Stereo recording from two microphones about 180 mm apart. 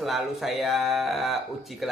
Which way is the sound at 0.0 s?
Centre (ahead or behind).